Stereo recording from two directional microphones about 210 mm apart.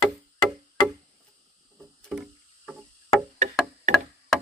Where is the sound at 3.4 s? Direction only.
35° right (ahead or behind).